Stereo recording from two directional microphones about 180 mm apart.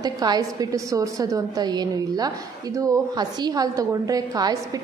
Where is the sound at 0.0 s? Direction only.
20° right (ahead or behind).